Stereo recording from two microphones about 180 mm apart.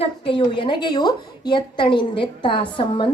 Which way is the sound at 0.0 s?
30° left (ahead or behind).